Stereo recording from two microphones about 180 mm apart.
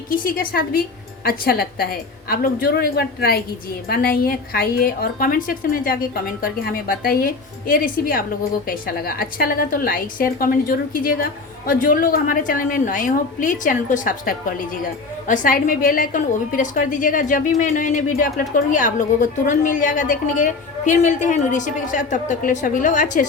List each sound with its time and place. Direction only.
0.1 s a woman's voice: 50° left (ahead or behind)